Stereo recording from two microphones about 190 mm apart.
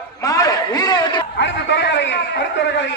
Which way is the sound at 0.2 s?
20° left (ahead or behind).